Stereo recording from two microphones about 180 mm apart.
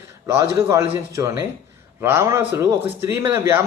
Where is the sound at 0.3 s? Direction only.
15° right (ahead or behind).